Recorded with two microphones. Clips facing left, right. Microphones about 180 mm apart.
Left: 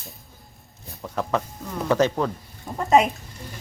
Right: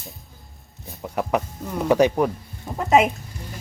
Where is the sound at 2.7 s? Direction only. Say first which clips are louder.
Right 1 dB; 5° right (ahead or behind).